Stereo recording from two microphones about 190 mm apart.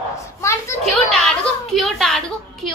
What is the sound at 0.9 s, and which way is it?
A child's voice, centre (ahead or behind).